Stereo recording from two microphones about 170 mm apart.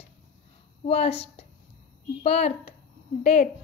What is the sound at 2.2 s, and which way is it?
A woman's voice, 40° left (ahead or behind).